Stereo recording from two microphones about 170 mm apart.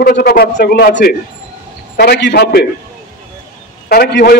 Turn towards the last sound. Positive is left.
turn(degrees=65)  # may be behind; listen again after turning